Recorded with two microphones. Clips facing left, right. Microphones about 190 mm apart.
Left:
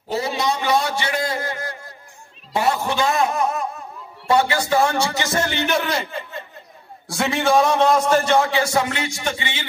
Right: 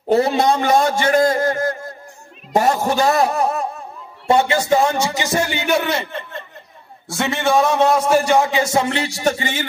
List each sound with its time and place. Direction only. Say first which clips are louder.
0.1 s a man's voice: right 7 dB; 55° right (ahead or behind); by 3.6 s 35° right (ahead or behind)
4.3 s a man's voice: right 3 dB; 20° right (ahead or behind); by 9.7 s 45° right (ahead or behind)